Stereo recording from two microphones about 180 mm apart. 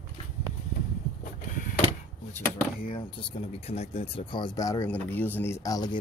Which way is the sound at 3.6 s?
35° left (ahead or behind).